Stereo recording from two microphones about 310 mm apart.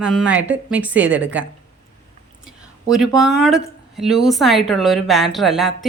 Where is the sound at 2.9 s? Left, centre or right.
Centre.